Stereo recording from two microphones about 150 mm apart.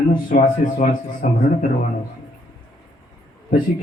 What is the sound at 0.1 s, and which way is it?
Speech, 65° left (ahead or behind).